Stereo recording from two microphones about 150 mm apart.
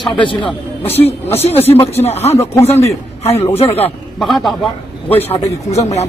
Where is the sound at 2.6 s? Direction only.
45° left (ahead or behind).